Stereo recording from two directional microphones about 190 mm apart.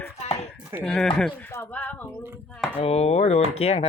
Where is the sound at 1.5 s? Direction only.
10° left (ahead or behind).